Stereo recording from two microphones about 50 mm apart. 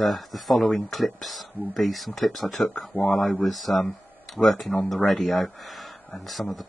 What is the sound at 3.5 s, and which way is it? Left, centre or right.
Speech, centre.